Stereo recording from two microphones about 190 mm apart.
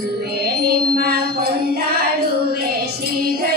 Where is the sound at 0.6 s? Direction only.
55° right (ahead or behind).